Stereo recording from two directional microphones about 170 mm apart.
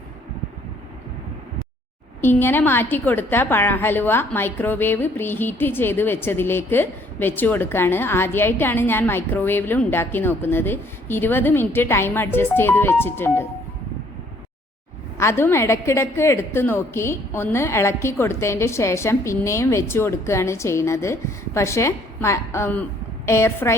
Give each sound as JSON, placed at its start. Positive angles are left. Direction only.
{"t": 2.2, "sound": "a woman's voice", "side_deg": 10}
{"t": 15.2, "sound": "a woman's voice", "side_deg": 15}